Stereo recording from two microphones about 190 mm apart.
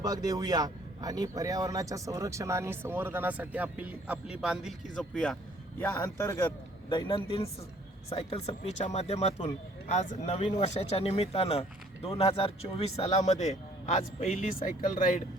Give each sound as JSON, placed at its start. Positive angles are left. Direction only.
{"t": 0.0, "sound": "a man's voice", "side_deg": -20}
{"t": 6.9, "sound": "a man's voice", "side_deg": 30}